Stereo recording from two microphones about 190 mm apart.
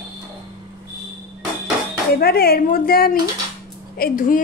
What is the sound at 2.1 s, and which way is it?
A woman's voice, 55° left (ahead or behind).